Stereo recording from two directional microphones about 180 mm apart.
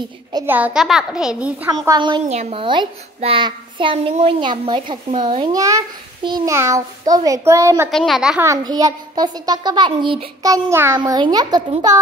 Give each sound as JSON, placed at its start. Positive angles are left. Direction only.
{"t": 0.5, "sound": "a child's voice", "side_deg": -10}
{"t": 1.7, "sound": "a child's voice", "side_deg": -20}
{"t": 7.9, "sound": "a child's voice", "side_deg": 0}
{"t": 8.5, "sound": "a child's voice", "side_deg": -20}